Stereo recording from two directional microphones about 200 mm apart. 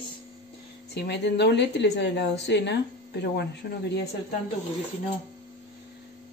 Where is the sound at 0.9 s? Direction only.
55° left (ahead or behind).